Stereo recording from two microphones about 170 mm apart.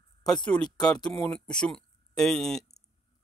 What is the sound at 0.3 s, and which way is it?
Speech, 5° left (ahead or behind).